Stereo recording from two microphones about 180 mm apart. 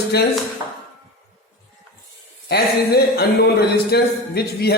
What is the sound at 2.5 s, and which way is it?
Speech, 60° left (ahead or behind).